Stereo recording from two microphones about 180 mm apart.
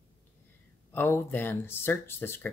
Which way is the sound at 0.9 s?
15° left (ahead or behind).